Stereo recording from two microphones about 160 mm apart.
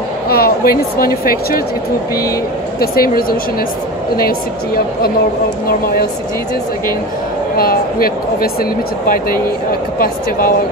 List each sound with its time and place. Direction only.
0.3 s speech: 70° left (ahead or behind)
2.8 s speech: 70° left (ahead or behind)
7.5 s speech: 65° left (ahead or behind)